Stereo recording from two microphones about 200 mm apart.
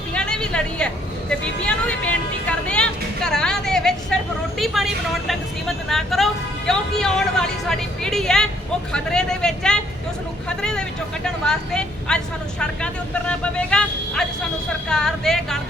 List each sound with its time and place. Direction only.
0.1 s a sound: 5° left (ahead or behind)
1.3 s speech: 5° left (ahead or behind)
2.5 s vehicle: 5° left (ahead or behind)
4.5 s speech: centre (ahead or behind)